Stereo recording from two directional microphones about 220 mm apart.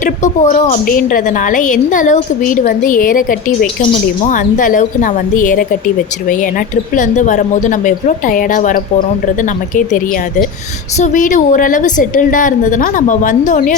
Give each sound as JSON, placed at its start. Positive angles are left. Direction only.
{"t": 0.0, "sound": "a woman's voice", "side_deg": 35}